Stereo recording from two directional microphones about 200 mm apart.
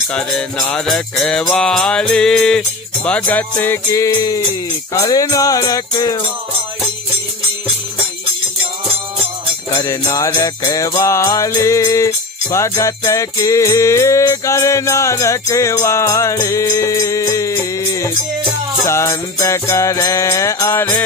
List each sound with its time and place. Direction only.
0.1 s music: 5° left (ahead or behind)
9.8 s music: 15° left (ahead or behind)